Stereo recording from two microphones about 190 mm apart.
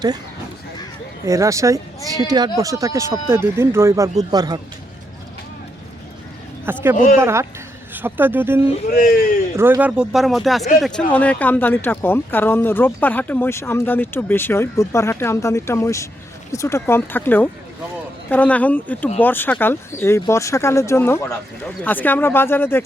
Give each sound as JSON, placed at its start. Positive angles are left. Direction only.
{"t": 1.2, "sound": "speech", "side_deg": -15}
{"t": 6.9, "sound": "speech", "side_deg": 40}
{"t": 7.2, "sound": "speech", "side_deg": -15}